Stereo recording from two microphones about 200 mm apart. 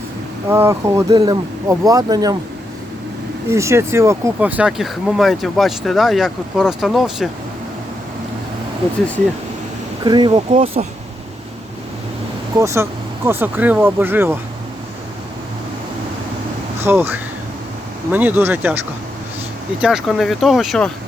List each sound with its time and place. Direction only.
0.4 s speech: 10° right (ahead or behind)
3.5 s speech: 15° right (ahead or behind)
10.0 s speech: 20° right (ahead or behind)
10.3 s speech: 30° right (ahead or behind)
12.5 s speech: 15° right (ahead or behind)
16.8 s speech: 10° right (ahead or behind)
19.8 s speech: centre (ahead or behind)